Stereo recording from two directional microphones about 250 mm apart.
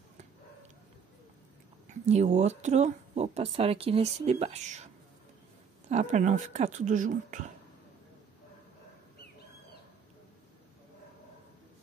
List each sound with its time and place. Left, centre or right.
1.9 s speech: right